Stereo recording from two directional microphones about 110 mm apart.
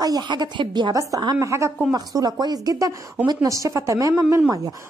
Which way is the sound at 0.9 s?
30° right (ahead or behind).